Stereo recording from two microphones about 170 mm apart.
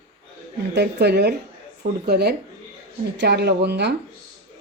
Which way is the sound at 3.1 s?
85° right.